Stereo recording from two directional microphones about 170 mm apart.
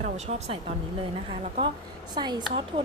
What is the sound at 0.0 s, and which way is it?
A woman's voice, 40° right (ahead or behind).